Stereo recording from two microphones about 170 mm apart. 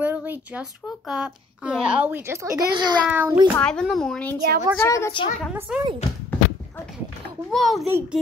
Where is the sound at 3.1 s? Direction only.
10° right (ahead or behind).